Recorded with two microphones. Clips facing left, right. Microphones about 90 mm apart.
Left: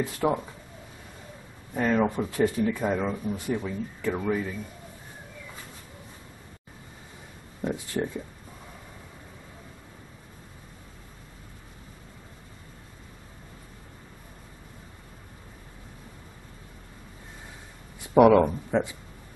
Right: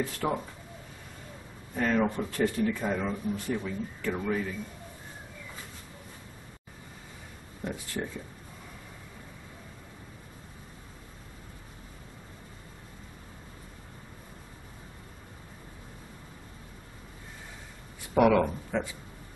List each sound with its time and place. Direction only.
0.0 s speech: 15° left (ahead or behind)
1.8 s speech: 15° left (ahead or behind)
7.6 s speech: 20° left (ahead or behind)
18.1 s speech: 20° left (ahead or behind)